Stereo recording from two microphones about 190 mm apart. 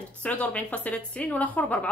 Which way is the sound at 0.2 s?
5° left (ahead or behind).